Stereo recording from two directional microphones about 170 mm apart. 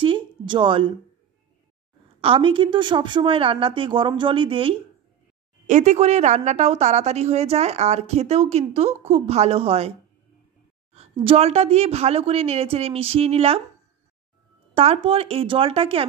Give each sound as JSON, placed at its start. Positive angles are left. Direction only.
{"t": 0.0, "sound": "a sound", "side_deg": -30}
{"t": 2.2, "sound": "a woman's voice", "side_deg": -30}
{"t": 5.7, "sound": "a woman's voice", "side_deg": -45}
{"t": 14.7, "sound": "a woman's voice", "side_deg": -35}